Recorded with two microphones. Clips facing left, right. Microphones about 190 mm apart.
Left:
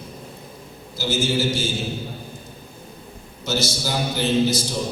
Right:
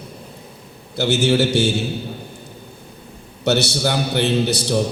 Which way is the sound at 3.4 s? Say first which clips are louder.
Right 7 dB; 65° right (ahead or behind).